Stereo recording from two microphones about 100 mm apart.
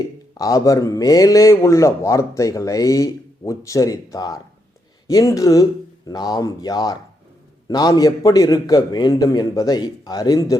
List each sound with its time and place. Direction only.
0.3 s a man's voice: 35° left (ahead or behind)